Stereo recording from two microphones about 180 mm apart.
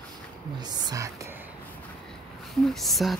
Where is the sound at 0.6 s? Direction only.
20° right (ahead or behind).